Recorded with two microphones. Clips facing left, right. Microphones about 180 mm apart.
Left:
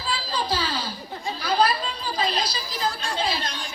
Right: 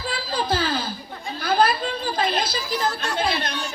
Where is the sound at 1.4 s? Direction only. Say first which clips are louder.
Right 3 dB; 55° right (ahead or behind).